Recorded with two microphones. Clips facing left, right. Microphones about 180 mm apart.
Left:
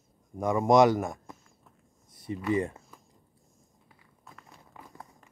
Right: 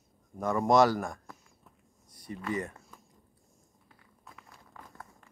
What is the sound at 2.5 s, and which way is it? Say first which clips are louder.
Speech: left 7 dB; 25° left (ahead or behind).